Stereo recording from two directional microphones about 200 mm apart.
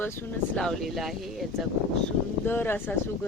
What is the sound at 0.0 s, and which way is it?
Speech, 5° left (ahead or behind).